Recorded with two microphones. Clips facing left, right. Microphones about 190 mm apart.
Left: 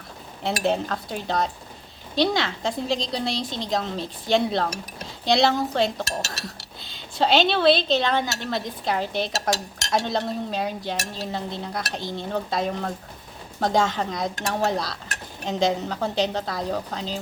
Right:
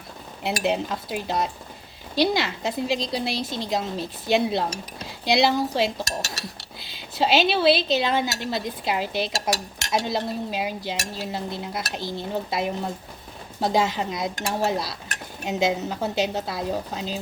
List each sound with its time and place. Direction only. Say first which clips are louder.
0.4 s dishes: left 1 dB; 5° right (ahead or behind)
3.6 s speech: left 1 dB; 5° right (ahead or behind)
5.2 s dishes: even; 5° right (ahead or behind)
6.8 s speech: left 1 dB; 5° right (ahead or behind)
9.8 s dishes: left 1 dB; 5° right (ahead or behind)
11.9 s dishes: even; 20° left (ahead or behind)
12.3 s speech: left 1 dB; 5° right (ahead or behind)